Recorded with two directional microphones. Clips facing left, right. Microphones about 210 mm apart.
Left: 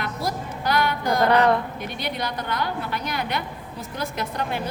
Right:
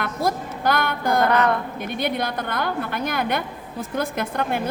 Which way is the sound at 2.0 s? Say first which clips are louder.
Right 5 dB; 55° right (ahead or behind).